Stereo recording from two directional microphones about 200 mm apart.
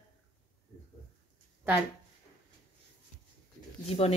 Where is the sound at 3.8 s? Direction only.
30° left (ahead or behind).